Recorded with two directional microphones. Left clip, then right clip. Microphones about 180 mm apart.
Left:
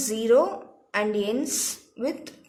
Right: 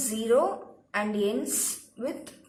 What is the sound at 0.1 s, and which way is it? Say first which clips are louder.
A woman's voice: left 4 dB; 55° left (ahead or behind).